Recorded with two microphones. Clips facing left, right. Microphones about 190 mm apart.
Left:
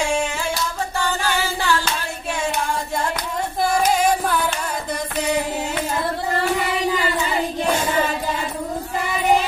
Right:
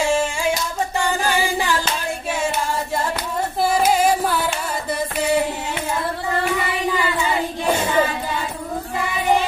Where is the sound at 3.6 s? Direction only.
5° right (ahead or behind).